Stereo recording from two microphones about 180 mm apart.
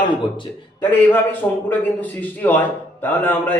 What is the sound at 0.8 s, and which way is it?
A man's voice, 10° left (ahead or behind).